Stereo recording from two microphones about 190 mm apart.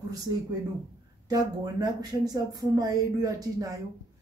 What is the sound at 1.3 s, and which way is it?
Speech, 20° right (ahead or behind).